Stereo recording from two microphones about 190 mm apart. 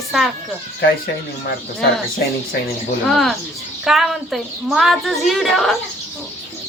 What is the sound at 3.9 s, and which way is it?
A woman's voice, centre (ahead or behind).